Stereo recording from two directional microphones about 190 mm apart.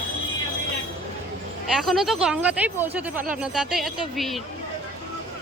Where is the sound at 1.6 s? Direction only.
Centre (ahead or behind).